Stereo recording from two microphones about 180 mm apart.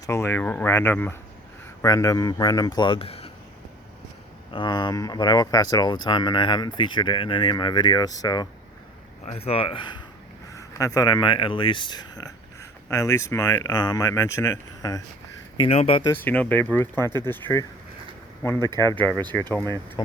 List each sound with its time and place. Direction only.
0.0 s speech: 15° left (ahead or behind); by 3.3 s 30° left (ahead or behind)
4.5 s speech: 25° left (ahead or behind)
9.2 s speech: 35° left (ahead or behind)
10.5 s speech: 20° left (ahead or behind)
15.5 s speech: 30° left (ahead or behind)
16.1 s speech: 10° left (ahead or behind)